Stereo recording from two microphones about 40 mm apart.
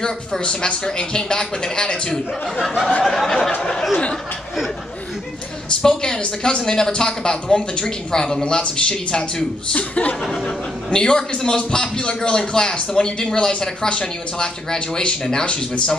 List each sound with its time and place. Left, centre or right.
0.0 s speech: centre
3.0 s speech: centre
3.9 s speech: left
5.8 s speech: centre
9.7 s speech: left
10.4 s speech: centre